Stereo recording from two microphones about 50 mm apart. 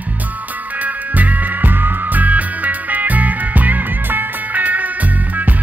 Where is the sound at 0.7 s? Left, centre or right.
Right.